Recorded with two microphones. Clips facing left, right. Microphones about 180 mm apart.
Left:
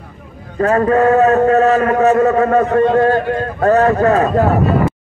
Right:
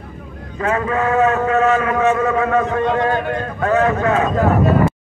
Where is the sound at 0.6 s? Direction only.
40° left (ahead or behind).